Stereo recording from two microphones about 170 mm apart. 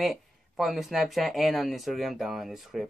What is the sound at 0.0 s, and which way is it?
Speech, centre (ahead or behind).